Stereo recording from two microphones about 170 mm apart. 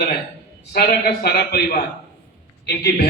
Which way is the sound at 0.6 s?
65° left (ahead or behind).